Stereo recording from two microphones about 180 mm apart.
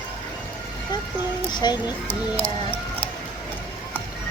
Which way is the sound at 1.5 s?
25° left (ahead or behind).